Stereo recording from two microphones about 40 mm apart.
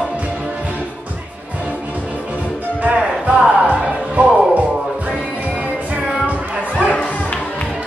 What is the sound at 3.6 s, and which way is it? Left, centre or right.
Music, right.